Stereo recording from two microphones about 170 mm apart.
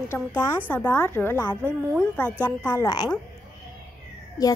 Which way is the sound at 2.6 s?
25° left (ahead or behind).